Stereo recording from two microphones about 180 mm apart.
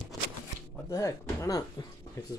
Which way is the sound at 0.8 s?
20° left (ahead or behind).